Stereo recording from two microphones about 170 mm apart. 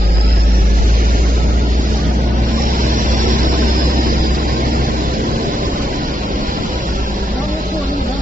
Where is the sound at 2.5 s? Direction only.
55° right (ahead or behind).